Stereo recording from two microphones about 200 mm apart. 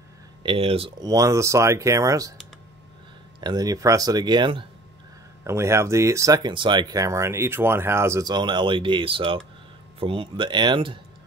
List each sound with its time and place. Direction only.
0.4 s speech: 25° right (ahead or behind)
3.3 s speech: 20° right (ahead or behind)
5.4 s speech: 15° right (ahead or behind)